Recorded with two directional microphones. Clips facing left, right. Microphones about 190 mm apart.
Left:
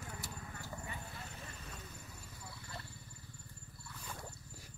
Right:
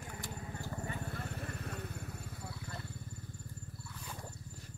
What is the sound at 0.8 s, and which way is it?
Vehicle, 45° right (ahead or behind).